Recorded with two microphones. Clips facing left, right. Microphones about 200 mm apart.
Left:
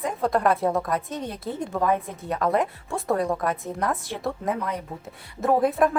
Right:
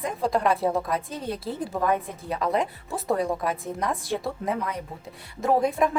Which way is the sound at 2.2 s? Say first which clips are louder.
Left 2 dB; centre (ahead or behind).